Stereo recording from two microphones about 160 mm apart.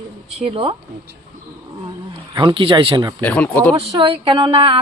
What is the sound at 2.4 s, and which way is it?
Speech, 30° right (ahead or behind).